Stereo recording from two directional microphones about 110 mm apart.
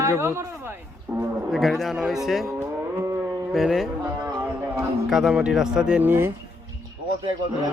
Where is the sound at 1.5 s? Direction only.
Centre (ahead or behind).